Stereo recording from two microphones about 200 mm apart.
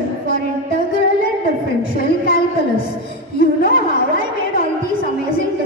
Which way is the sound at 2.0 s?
50° left (ahead or behind).